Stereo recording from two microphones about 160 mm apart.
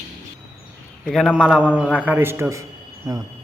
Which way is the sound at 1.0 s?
Centre (ahead or behind).